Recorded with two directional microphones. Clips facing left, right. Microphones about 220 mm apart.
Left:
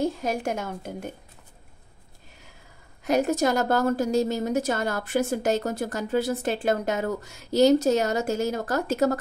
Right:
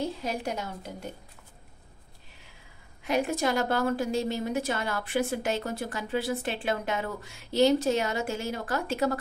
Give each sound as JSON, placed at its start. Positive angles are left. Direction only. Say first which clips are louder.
{"t": 0.0, "sound": "a woman's voice", "louder": "left 5 dB", "side_deg": 50}
{"t": 3.0, "sound": "a woman's voice", "louder": "left 5 dB", "side_deg": 40}